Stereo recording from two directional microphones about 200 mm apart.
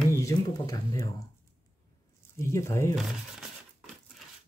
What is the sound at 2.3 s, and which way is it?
Speech, 15° left (ahead or behind).